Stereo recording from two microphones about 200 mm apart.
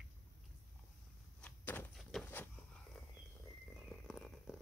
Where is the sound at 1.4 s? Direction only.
10° left (ahead or behind).